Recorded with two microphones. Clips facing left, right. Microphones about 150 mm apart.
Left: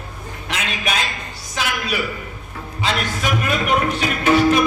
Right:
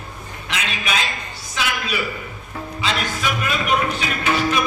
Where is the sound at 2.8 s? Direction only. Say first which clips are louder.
Left 2 dB; 50° left (ahead or behind).